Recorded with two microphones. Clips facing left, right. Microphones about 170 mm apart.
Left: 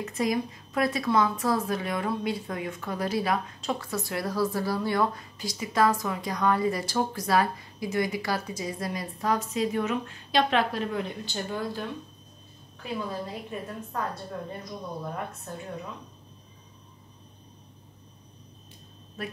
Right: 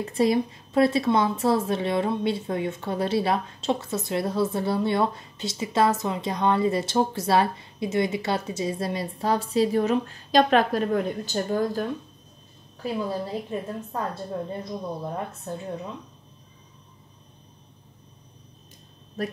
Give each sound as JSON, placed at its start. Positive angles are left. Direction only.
{"t": 0.0, "sound": "a woman's voice", "side_deg": -30}
{"t": 12.8, "sound": "a woman's voice", "side_deg": -30}
{"t": 19.2, "sound": "a woman's voice", "side_deg": -40}